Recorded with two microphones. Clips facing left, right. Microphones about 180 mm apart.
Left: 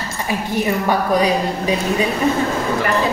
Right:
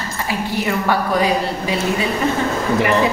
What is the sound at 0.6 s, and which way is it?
A woman's voice, 20° left (ahead or behind).